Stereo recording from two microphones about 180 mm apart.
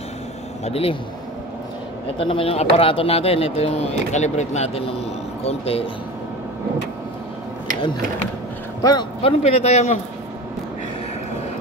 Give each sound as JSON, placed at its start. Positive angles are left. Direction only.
{"t": 0.7, "sound": "speech", "side_deg": 35}
{"t": 2.1, "sound": "speech", "side_deg": 30}
{"t": 8.8, "sound": "a man's voice", "side_deg": 25}
{"t": 9.4, "sound": "speech", "side_deg": 35}